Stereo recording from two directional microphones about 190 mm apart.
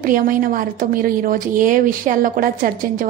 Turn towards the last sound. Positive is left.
turn(degrees=-45)  # may be behind; listen again after turning